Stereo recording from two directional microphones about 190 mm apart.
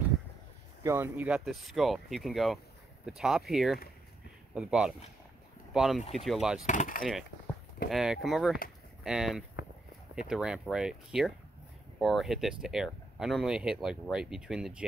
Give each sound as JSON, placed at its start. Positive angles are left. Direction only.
{"t": 0.8, "sound": "speech", "side_deg": -10}
{"t": 6.6, "sound": "wood", "side_deg": 40}
{"t": 7.9, "sound": "speech", "side_deg": 0}